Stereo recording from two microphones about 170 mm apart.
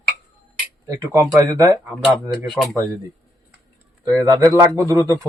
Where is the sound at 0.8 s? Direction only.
20° right (ahead or behind).